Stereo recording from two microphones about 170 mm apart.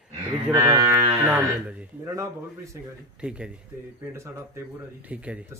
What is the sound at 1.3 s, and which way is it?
Speech, 10° right (ahead or behind).